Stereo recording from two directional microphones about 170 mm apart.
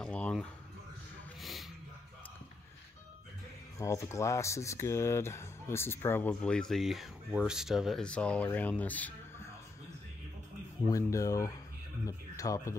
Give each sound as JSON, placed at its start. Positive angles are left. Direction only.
{"t": 0.0, "sound": "a sound", "side_deg": 5}
{"t": 3.7, "sound": "speech", "side_deg": 15}
{"t": 10.9, "sound": "speech", "side_deg": 20}